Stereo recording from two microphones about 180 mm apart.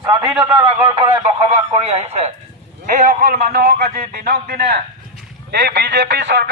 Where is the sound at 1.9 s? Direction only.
35° right (ahead or behind).